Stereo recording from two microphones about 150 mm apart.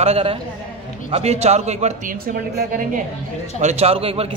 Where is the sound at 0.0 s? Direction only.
40° right (ahead or behind); by 3.0 s 70° right (ahead or behind).